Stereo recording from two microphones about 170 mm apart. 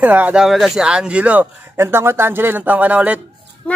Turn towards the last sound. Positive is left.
turn(degrees=-10)  # may be behind; listen again after turning